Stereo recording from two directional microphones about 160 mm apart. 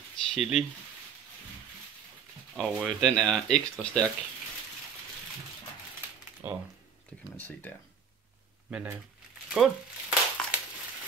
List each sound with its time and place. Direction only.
0.3 s speech: centre (ahead or behind)
2.5 s speech: centre (ahead or behind)
6.4 s speech: 15° right (ahead or behind)
7.3 s speech: 10° left (ahead or behind)
8.6 s speech: 10° right (ahead or behind)
9.5 s a sound: 5° right (ahead or behind)